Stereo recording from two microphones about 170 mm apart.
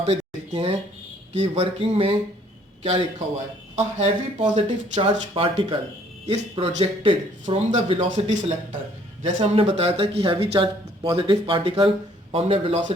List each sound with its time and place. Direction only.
0.0 s a sound: 35° right (ahead or behind)
1.3 s speech: 40° right (ahead or behind)
4.5 s speech: 30° right (ahead or behind)
7.6 s speech: 40° right (ahead or behind)